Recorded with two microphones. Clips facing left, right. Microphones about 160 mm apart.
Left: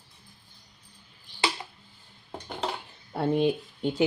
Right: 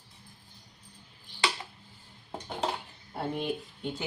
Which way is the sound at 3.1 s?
85° left.